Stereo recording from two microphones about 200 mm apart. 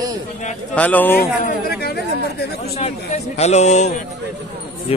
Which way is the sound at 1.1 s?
50° left (ahead or behind).